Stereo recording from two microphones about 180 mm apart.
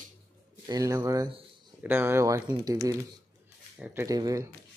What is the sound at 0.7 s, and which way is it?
Speech, 20° right (ahead or behind).